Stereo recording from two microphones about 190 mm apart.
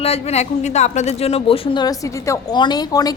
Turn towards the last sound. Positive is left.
turn(degrees=20)  # may be behind; listen again after turning